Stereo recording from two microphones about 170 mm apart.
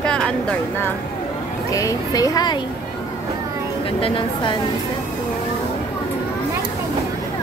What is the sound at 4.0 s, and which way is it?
Speech, 30° left (ahead or behind).